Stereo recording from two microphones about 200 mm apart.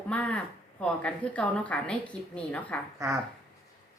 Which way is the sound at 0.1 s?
5° left (ahead or behind).